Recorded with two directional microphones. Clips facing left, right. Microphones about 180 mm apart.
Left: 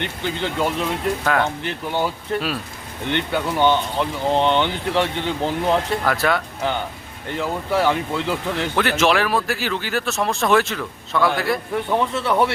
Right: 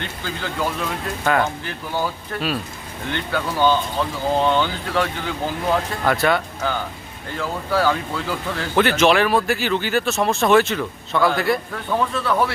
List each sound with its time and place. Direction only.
0.0 s speech: 20° left (ahead or behind)
1.2 s speech: 5° right (ahead or behind)
1.6 s speech: 25° left (ahead or behind)
6.1 s speech: centre (ahead or behind)
6.6 s speech: 25° left (ahead or behind)
8.7 s speech: centre (ahead or behind)
11.7 s speech: 20° left (ahead or behind)